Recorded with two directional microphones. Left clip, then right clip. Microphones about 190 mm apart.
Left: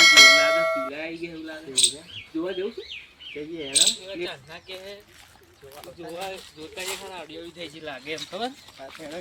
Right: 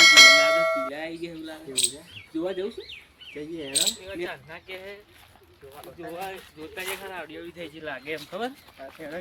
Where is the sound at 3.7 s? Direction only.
10° left (ahead or behind).